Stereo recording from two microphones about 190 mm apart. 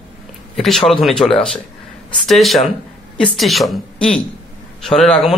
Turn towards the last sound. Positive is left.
turn(degrees=5)  # may be behind; listen again after turning